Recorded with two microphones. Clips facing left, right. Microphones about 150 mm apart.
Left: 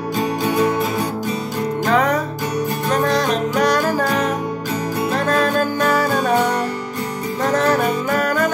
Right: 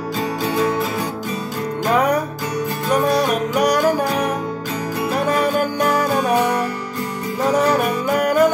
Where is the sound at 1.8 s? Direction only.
15° right (ahead or behind).